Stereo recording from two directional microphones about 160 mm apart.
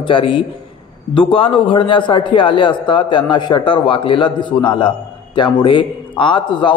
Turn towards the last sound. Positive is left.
turn(degrees=30)  # may be behind; listen again after turning